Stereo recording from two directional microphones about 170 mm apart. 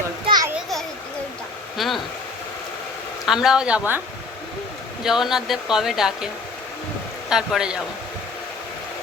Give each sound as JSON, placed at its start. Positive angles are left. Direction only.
{"t": 0.3, "sound": "children playing", "side_deg": -20}
{"t": 1.7, "sound": "speech", "side_deg": 0}
{"t": 3.2, "sound": "speech", "side_deg": -5}
{"t": 5.0, "sound": "speech", "side_deg": 0}
{"t": 7.3, "sound": "speech", "side_deg": -5}